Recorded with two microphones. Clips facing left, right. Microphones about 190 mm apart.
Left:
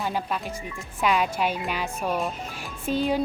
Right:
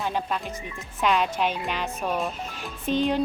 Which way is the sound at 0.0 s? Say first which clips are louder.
Even; 5° left (ahead or behind).